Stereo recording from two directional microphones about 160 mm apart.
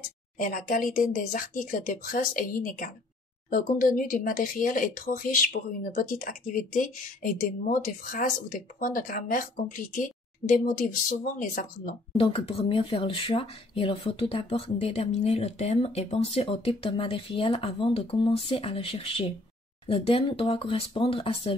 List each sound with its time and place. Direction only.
0.4 s speech: 60° left (ahead or behind)
12.2 s speech: 35° left (ahead or behind)